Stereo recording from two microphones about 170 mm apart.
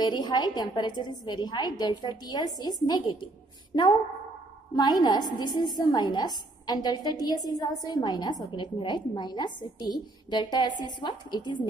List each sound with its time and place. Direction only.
0.0 s a woman's voice: 25° left (ahead or behind)